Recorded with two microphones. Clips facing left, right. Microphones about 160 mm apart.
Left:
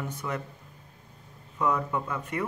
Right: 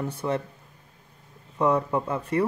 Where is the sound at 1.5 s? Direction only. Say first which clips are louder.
Right 5 dB; 30° right (ahead or behind).